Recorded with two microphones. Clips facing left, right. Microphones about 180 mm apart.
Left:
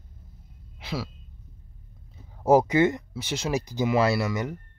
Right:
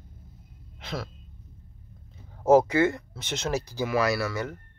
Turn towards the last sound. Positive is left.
turn(degrees=20)  # may be behind; listen again after turning